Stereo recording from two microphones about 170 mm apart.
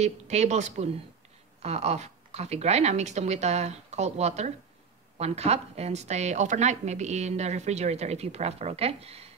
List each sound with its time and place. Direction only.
0.0 s a woman's voice: 40° right (ahead or behind)